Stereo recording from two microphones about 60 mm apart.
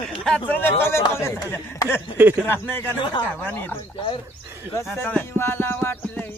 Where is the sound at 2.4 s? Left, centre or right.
Left.